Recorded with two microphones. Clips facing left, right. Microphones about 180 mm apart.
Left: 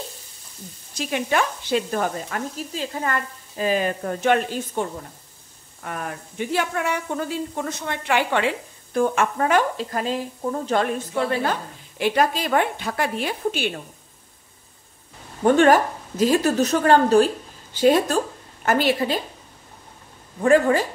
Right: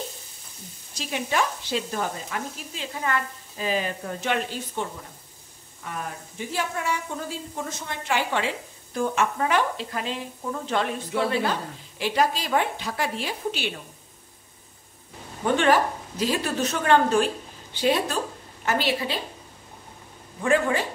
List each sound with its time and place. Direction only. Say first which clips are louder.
0.9 s speech: left 4 dB; 55° left (ahead or behind)
5.9 s a woman's voice: left 3 dB; 65° left (ahead or behind); by 10.9 s 40° left (ahead or behind)
12.0 s a woman's voice: left 3 dB; 55° left (ahead or behind)
15.4 s a woman's voice: left 5 dB; 45° left (ahead or behind)
20.4 s a woman's voice: left 6 dB; 40° left (ahead or behind)